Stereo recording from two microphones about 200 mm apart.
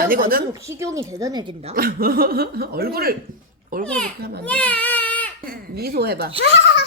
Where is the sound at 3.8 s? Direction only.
5° left (ahead or behind).